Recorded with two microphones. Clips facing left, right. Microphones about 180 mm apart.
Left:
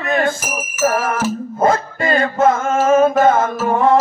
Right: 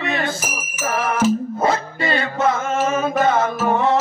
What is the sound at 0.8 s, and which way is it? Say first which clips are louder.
Music: left 1 dB; 45° left (ahead or behind).